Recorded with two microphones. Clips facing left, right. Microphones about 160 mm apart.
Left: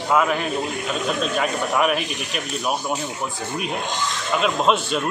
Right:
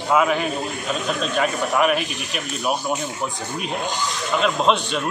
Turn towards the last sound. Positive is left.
turn(degrees=5)  # may be behind; listen again after turning